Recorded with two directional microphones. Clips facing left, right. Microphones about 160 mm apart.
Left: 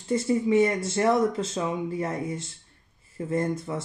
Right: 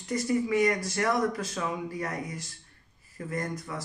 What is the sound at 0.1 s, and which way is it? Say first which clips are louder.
Speech: left 4 dB; 25° left (ahead or behind).